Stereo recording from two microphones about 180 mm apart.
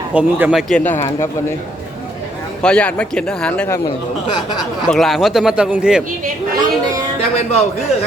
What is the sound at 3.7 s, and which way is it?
Speech, 20° left (ahead or behind).